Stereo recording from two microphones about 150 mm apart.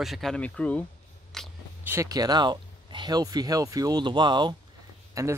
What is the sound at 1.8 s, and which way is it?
Speech, 20° right (ahead or behind).